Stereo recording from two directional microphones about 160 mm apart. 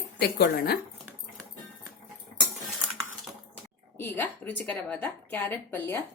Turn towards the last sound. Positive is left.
turn(degrees=15)  # may be behind; listen again after turning